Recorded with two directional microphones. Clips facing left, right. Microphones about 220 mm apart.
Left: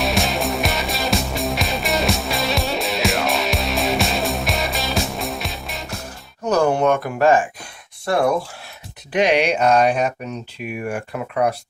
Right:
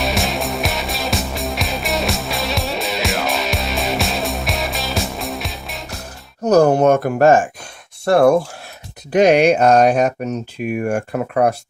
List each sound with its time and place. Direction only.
0.0 s music: centre (ahead or behind)
6.4 s speech: 40° right (ahead or behind)